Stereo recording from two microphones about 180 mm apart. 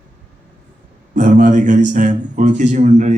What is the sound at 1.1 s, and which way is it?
Speech, 45° right (ahead or behind).